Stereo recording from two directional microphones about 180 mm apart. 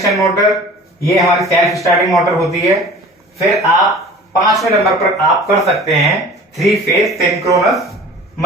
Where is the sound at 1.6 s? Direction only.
15° left (ahead or behind).